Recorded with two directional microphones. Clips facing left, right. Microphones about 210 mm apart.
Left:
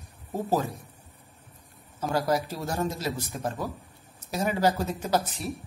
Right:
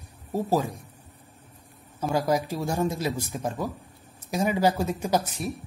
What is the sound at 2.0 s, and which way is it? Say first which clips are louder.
A man's voice: right 2 dB; 10° right (ahead or behind).